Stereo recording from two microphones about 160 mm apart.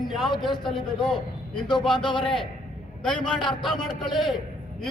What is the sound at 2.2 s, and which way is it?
Speech, 5° left (ahead or behind).